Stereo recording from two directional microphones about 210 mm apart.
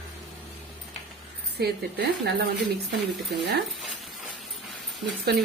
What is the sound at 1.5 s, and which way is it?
Speech, 50° right (ahead or behind).